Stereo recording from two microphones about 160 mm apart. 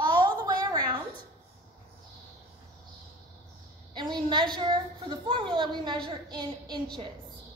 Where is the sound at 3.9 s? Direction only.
30° right (ahead or behind).